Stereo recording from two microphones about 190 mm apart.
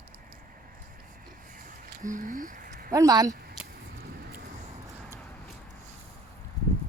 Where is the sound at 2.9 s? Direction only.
20° right (ahead or behind).